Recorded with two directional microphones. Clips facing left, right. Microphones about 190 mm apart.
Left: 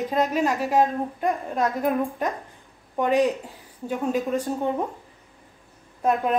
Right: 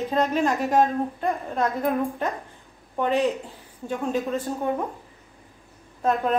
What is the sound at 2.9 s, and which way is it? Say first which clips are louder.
Speech: left 2 dB; 15° left (ahead or behind).